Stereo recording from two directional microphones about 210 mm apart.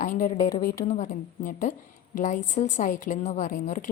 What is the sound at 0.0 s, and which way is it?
A woman's voice, 35° left (ahead or behind).